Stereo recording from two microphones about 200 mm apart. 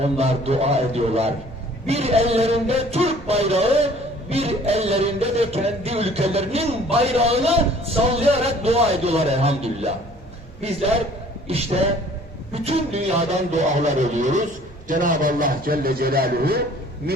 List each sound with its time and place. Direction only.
0.0 s a man's voice: 30° right (ahead or behind); by 16.6 s 50° right (ahead or behind)